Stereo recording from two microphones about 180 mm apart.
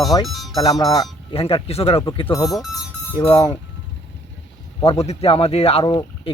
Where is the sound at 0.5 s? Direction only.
20° left (ahead or behind).